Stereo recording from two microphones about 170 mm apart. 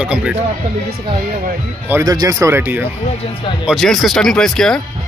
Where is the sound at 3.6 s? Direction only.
Centre (ahead or behind).